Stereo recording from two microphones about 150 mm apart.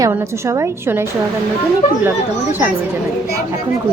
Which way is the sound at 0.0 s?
20° right (ahead or behind).